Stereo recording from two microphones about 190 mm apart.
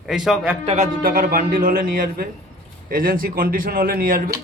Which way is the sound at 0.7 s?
40° right (ahead or behind).